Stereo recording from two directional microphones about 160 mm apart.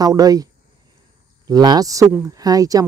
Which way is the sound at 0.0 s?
25° right (ahead or behind).